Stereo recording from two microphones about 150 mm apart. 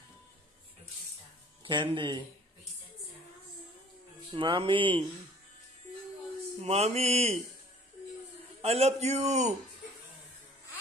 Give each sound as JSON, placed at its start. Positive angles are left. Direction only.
{"t": 1.6, "sound": "music", "side_deg": -35}
{"t": 4.3, "sound": "music", "side_deg": -35}
{"t": 6.6, "sound": "mantra", "side_deg": -45}
{"t": 8.6, "sound": "mantra", "side_deg": -45}